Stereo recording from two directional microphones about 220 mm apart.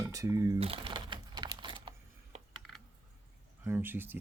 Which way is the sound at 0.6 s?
25° right (ahead or behind).